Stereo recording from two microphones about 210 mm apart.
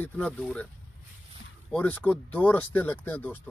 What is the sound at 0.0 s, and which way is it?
Speech, 10° left (ahead or behind).